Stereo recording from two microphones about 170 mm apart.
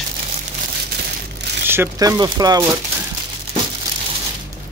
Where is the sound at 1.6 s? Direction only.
15° right (ahead or behind).